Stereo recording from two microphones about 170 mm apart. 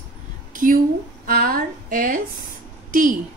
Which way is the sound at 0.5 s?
55° right (ahead or behind).